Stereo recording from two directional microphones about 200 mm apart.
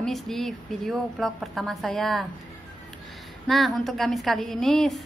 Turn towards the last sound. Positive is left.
turn(degrees=0)  # may be behind; listen again after turning